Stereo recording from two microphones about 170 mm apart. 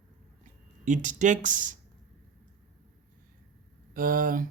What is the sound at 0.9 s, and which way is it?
Speech, 45° right (ahead or behind).